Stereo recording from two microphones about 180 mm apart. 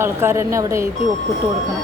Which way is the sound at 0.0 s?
15° right (ahead or behind).